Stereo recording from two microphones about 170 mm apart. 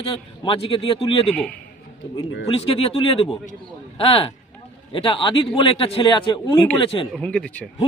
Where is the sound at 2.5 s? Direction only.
35° left (ahead or behind).